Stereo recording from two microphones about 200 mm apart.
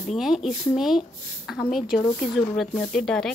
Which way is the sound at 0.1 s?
Centre (ahead or behind).